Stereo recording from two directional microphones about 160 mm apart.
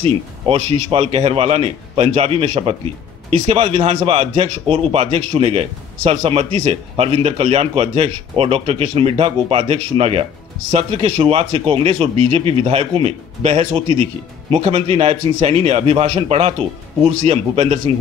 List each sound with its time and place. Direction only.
0.0 s a man's voice: 35° right (ahead or behind)